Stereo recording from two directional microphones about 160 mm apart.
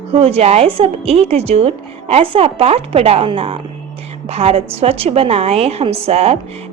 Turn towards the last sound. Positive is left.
turn(degrees=-40)  # may be behind; listen again after turning